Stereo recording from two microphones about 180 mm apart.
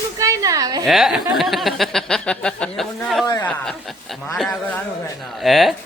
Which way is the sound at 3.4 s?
5° left (ahead or behind).